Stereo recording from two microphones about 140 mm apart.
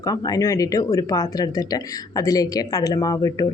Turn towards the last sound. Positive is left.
turn(degrees=25)  # may be behind; listen again after turning